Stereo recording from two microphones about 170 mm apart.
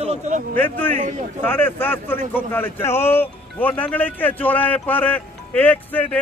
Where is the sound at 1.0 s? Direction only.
45° right (ahead or behind).